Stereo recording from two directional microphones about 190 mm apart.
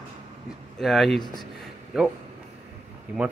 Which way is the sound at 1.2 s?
20° left (ahead or behind).